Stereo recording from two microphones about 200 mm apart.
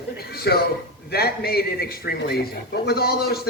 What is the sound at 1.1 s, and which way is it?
A man's voice, 50° left (ahead or behind).